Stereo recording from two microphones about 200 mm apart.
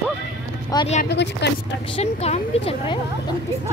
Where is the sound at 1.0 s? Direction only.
60° left (ahead or behind).